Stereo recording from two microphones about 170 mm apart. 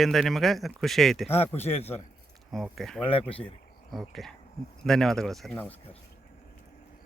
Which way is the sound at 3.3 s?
35° left (ahead or behind).